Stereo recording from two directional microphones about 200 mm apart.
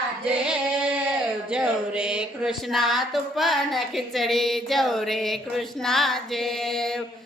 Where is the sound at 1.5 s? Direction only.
5° right (ahead or behind).